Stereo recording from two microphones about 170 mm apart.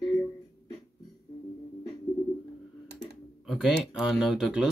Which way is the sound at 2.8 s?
75° right (ahead or behind).